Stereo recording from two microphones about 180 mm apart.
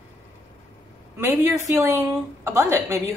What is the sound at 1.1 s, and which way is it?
Speech, 15° right (ahead or behind).